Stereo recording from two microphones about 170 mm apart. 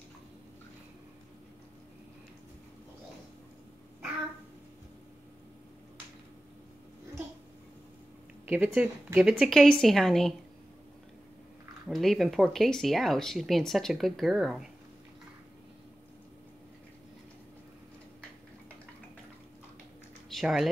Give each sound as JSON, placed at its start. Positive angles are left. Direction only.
{"t": 8.5, "sound": "speech", "side_deg": -10}
{"t": 11.9, "sound": "speech", "side_deg": 0}
{"t": 20.2, "sound": "speech", "side_deg": 0}